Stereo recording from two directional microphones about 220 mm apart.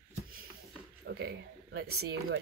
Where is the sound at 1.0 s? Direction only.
50° right (ahead or behind).